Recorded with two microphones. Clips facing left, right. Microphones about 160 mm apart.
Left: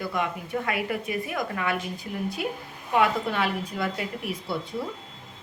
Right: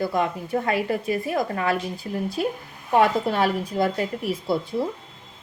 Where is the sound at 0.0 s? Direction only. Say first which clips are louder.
Right 5 dB; 35° right (ahead or behind).